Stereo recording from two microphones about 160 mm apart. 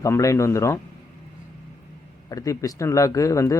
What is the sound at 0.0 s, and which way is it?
Speech, 20° left (ahead or behind).